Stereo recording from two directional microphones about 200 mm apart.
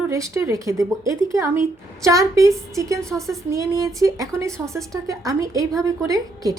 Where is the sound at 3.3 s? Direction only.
15° right (ahead or behind).